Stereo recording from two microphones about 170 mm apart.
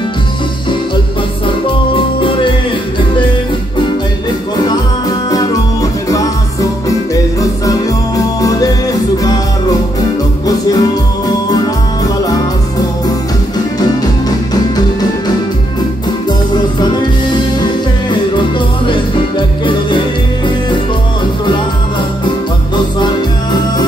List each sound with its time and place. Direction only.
2.0 s music: 30° left (ahead or behind)
5.3 s music: 20° left (ahead or behind)
8.4 s music: 20° left (ahead or behind)
10.4 s music: 20° left (ahead or behind)
18.9 s music: 30° left (ahead or behind)